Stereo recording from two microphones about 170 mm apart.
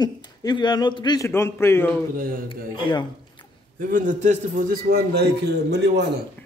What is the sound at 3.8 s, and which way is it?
A man's voice, 50° right (ahead or behind).